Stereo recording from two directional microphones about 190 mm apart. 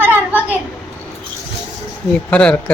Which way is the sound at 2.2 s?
5° left (ahead or behind).